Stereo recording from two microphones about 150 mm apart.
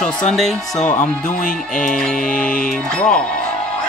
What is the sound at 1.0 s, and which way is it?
Speech, 65° left (ahead or behind).